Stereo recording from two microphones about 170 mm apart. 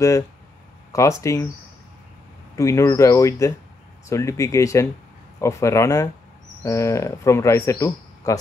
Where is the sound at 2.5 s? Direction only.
15° left (ahead or behind).